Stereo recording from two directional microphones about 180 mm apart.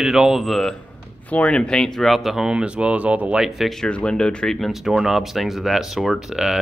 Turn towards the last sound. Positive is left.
turn(degrees=-5)  # may be behind; listen again after turning